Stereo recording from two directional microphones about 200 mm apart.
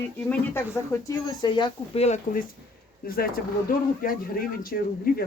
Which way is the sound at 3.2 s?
50° left (ahead or behind).